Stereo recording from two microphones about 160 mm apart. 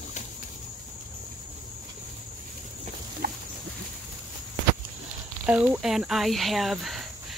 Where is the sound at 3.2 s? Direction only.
70° right (ahead or behind).